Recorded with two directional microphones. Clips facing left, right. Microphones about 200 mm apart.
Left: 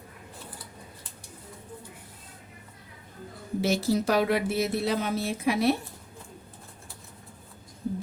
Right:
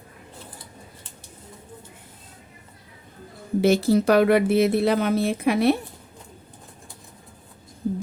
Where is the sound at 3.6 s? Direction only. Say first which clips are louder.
Right 7 dB; 60° right (ahead or behind).